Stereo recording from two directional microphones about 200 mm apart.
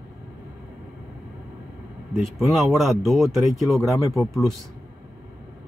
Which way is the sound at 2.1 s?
Centre (ahead or behind).